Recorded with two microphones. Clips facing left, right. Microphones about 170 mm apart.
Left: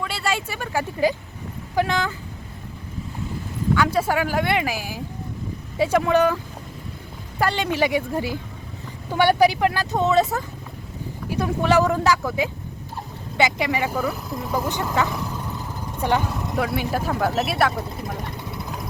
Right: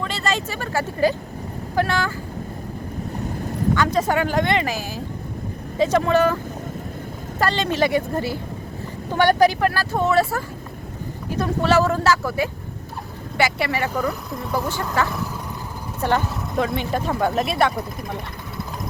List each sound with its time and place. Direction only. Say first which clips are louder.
0.0 s speech: right 1 dB; 10° left (ahead or behind)
3.8 s speech: even; 10° left (ahead or behind)
16.0 s speech: right 1 dB; 10° left (ahead or behind)